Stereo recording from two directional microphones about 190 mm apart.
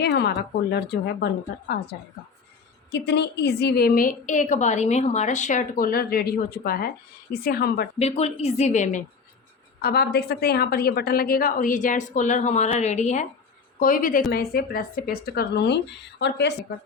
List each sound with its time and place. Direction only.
0.0 s speech: 60° left (ahead or behind)
3.1 s a woman's voice: 60° left (ahead or behind)
7.9 s a woman's voice: 35° left (ahead or behind)
9.8 s a woman's voice: 55° left (ahead or behind)